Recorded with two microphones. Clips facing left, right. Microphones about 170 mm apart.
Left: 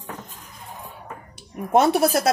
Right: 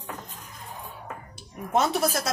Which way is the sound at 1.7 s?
65° left (ahead or behind).